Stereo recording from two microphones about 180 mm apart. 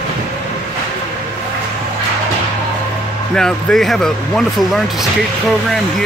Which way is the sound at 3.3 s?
5° left (ahead or behind).